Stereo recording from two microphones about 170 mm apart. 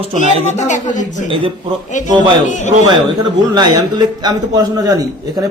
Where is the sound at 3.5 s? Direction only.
25° right (ahead or behind).